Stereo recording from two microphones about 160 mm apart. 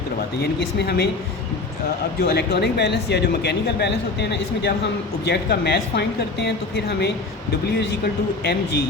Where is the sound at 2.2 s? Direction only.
85° left.